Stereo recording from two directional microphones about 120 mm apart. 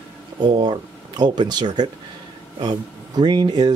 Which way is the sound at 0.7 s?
35° right (ahead or behind).